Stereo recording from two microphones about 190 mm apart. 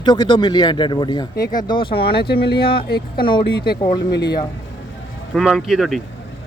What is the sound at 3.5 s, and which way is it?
Speech, 55° left (ahead or behind).